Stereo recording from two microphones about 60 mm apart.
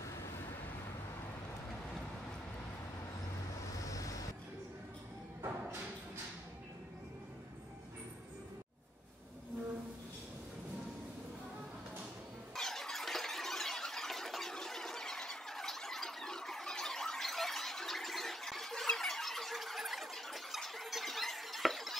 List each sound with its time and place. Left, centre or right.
0.0 s vehicle: left
3.8 s waves: left
12.5 s squeal: centre